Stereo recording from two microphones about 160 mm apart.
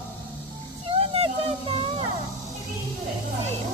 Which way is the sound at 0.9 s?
35° right (ahead or behind).